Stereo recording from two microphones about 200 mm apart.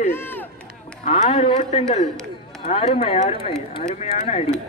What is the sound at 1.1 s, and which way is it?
Speech, 30° left (ahead or behind).